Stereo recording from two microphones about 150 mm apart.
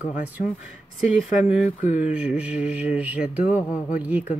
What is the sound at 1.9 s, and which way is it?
Mantra, 10° right (ahead or behind).